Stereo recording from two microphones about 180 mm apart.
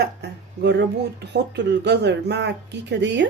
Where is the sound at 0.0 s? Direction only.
70° right (ahead or behind).